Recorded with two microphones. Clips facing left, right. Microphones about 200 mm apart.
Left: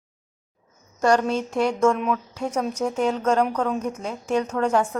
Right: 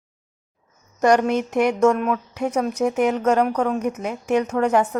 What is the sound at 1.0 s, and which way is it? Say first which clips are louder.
A woman's voice: right 3 dB; 10° right (ahead or behind).